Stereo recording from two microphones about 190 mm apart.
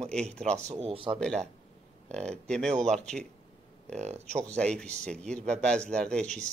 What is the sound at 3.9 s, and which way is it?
Speech, 35° right (ahead or behind).